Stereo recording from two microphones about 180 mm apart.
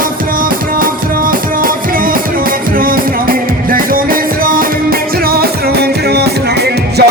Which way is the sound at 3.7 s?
55° right (ahead or behind).